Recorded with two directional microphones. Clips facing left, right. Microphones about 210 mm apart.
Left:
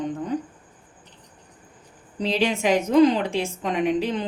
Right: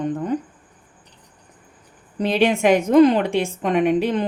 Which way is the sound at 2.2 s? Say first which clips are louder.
Right 5 dB; 55° right (ahead or behind).